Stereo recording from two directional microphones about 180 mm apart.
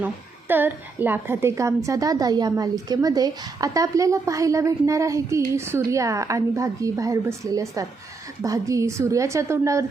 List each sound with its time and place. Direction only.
0.0 s a woman's voice: 10° right (ahead or behind)